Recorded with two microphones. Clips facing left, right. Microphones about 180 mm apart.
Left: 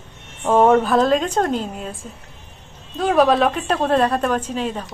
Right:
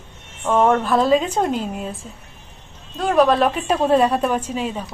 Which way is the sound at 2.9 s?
Centre (ahead or behind).